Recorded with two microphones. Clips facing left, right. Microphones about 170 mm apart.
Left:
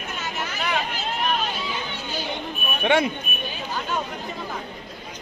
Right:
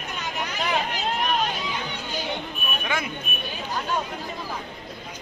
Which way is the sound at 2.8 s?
30° left (ahead or behind).